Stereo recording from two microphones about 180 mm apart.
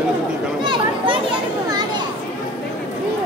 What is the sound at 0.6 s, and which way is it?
Children playing, 30° right (ahead or behind).